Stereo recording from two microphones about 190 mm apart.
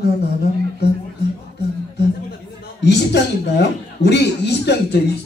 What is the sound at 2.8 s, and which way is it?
A woman's voice, 65° left (ahead or behind).